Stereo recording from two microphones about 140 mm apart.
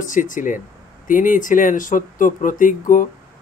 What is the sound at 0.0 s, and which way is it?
Speech, 70° left (ahead or behind).